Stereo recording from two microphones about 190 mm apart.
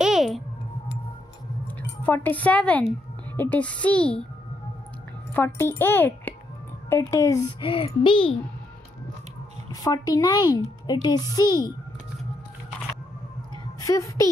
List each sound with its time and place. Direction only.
0.0 s music: centre (ahead or behind)
2.0 s a child's voice: 10° left (ahead or behind)
5.3 s a child's voice: 10° left (ahead or behind)
7.7 s a woman's voice: 30° left (ahead or behind)
9.7 s a woman's voice: 20° left (ahead or behind)
13.7 s a woman's voice: 15° left (ahead or behind)